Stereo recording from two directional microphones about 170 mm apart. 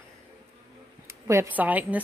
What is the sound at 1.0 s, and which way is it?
Speech, 15° right (ahead or behind).